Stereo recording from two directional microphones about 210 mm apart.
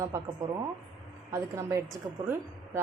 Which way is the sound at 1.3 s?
15° right (ahead or behind).